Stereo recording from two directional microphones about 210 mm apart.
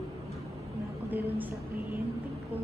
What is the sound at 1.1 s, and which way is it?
Music, 10° right (ahead or behind).